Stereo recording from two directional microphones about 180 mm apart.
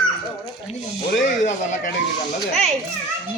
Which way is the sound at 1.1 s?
45° left (ahead or behind).